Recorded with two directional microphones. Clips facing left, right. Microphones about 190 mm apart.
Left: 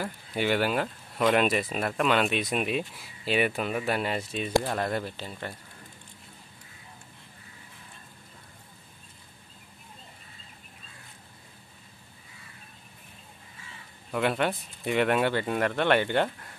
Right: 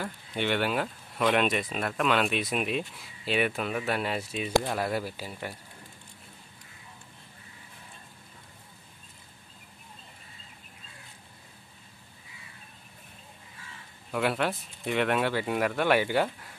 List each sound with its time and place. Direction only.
0.0 s speech: 5° left (ahead or behind)
14.1 s speech: centre (ahead or behind)